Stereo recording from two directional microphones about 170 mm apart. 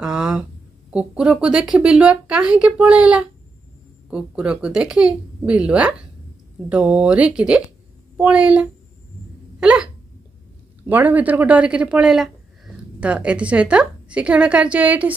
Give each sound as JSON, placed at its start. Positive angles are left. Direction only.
{"t": 0.0, "sound": "a sound", "side_deg": -5}
{"t": 0.9, "sound": "speech", "side_deg": -5}
{"t": 10.9, "sound": "speech", "side_deg": -10}